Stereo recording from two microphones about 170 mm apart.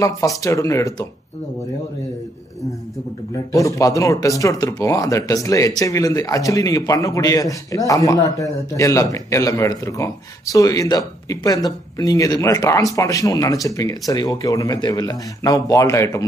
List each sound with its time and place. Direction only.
0.0 s speech: 20° left (ahead or behind)
3.5 s speech: 20° left (ahead or behind)